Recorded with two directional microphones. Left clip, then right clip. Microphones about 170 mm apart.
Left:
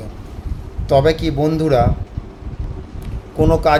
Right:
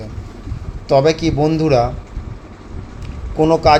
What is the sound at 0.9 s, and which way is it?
Speech, 15° right (ahead or behind).